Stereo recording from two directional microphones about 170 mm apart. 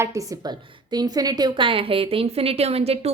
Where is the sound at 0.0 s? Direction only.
20° right (ahead or behind).